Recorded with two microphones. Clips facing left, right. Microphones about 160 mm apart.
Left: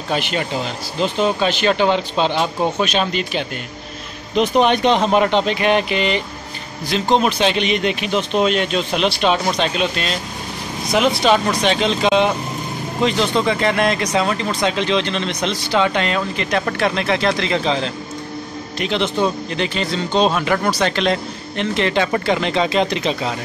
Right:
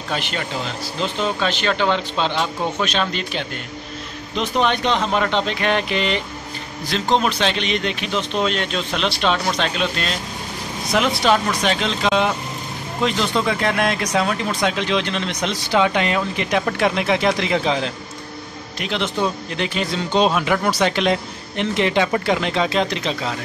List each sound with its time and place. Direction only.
1.2 s speech: 15° left (ahead or behind)
10.9 s speech: centre (ahead or behind)